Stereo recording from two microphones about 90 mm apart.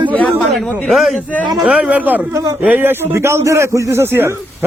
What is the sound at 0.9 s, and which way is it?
A man's voice, centre (ahead or behind).